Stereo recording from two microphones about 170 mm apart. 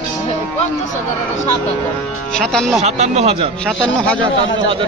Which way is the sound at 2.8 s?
40° right (ahead or behind).